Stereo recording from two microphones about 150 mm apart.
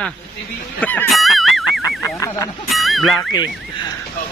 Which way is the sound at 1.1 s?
Centre (ahead or behind).